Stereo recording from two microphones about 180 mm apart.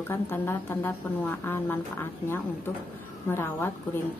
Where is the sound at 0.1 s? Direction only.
10° left (ahead or behind).